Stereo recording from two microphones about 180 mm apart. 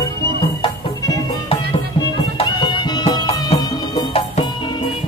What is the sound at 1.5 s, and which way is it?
Music, 30° left (ahead or behind).